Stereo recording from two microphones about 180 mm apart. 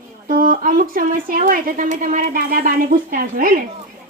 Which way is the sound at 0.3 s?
50° right (ahead or behind).